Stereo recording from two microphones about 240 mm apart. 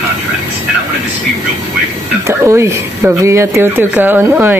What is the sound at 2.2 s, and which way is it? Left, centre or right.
Speech, centre.